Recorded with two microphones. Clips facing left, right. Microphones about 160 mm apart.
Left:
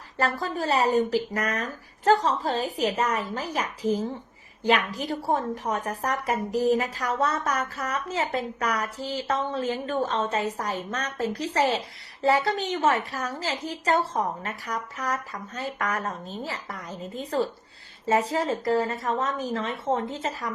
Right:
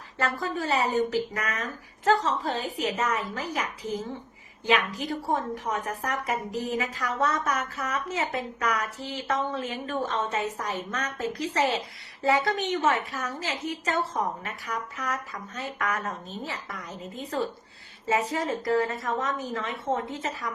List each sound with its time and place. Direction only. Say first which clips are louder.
0.2 s a woman's voice: left 2 dB; 35° left (ahead or behind)
18.2 s a woman's voice: left 3 dB; 30° left (ahead or behind)